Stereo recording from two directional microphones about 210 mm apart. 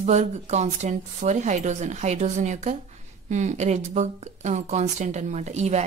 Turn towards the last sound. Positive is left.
turn(degrees=-30)  # may be behind; listen again after turning